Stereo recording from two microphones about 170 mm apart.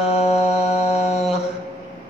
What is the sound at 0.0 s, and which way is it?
Music, 35° left (ahead or behind).